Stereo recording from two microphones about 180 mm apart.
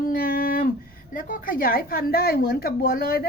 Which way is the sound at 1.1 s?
50° left (ahead or behind).